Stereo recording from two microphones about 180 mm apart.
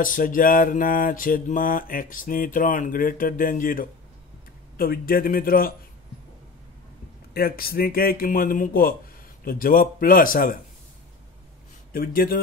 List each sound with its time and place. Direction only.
0.0 s mantra: 50° left (ahead or behind)
4.7 s speech: 55° left (ahead or behind)
7.3 s speech: 55° left (ahead or behind)
9.4 s mantra: 55° left (ahead or behind)
11.9 s speech: 55° left (ahead or behind)